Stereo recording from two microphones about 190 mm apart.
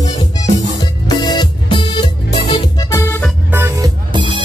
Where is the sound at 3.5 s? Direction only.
15° right (ahead or behind).